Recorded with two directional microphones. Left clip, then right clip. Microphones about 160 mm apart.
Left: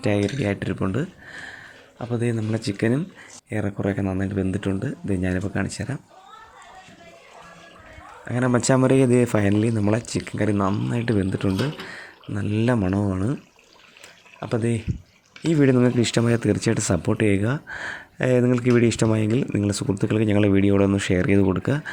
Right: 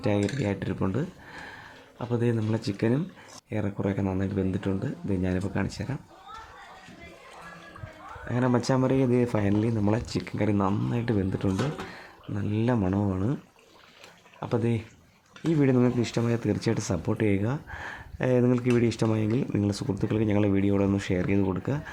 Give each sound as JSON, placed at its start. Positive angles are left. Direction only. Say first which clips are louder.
{"t": 0.0, "sound": "speech", "louder": "left 4 dB", "side_deg": 15}
{"t": 8.2, "sound": "speech", "louder": "left 3 dB", "side_deg": 10}
{"t": 8.4, "sound": "speech", "louder": "left 6 dB", "side_deg": 20}
{"t": 14.3, "sound": "speech", "louder": "left 3 dB", "side_deg": 10}